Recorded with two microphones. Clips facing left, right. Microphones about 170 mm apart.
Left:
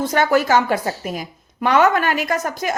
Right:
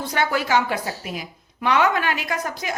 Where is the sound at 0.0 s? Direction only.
45° left (ahead or behind).